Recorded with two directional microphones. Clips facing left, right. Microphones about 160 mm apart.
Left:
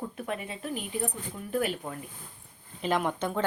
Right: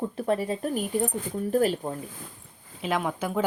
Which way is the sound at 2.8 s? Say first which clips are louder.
Even; centre (ahead or behind).